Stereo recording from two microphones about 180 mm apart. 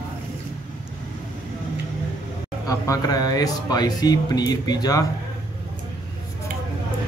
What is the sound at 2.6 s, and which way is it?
Speech, 20° left (ahead or behind).